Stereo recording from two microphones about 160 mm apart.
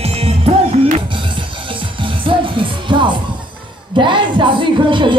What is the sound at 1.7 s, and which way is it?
Music, 30° right (ahead or behind).